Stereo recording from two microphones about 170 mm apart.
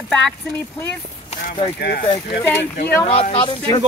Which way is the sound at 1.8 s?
75° left (ahead or behind).